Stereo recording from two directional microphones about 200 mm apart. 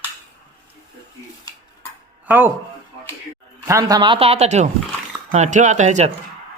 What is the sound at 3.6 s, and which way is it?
A man's voice, 15° right (ahead or behind).